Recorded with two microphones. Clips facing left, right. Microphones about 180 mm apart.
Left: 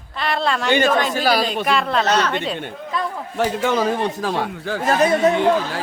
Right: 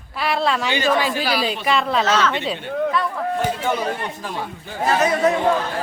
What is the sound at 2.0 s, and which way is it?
Speech, 45° left (ahead or behind).